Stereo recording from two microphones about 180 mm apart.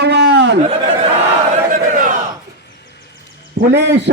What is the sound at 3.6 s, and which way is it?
Speech, 70° right (ahead or behind).